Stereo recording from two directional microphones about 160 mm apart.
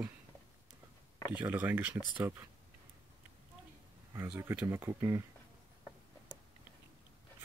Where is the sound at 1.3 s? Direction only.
10° right (ahead or behind).